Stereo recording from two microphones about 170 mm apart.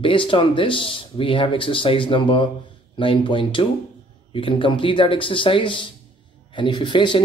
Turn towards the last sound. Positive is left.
turn(degrees=25)  # may be behind; listen again after turning